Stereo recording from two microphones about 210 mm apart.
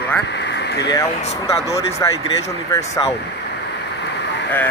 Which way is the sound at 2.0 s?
15° left (ahead or behind).